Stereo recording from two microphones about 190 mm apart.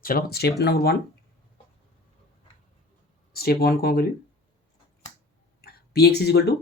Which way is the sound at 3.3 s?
55° left (ahead or behind).